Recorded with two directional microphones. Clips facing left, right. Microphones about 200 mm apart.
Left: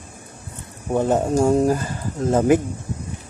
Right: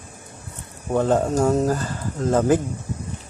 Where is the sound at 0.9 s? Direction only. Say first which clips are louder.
Left 1 dB; 15° left (ahead or behind).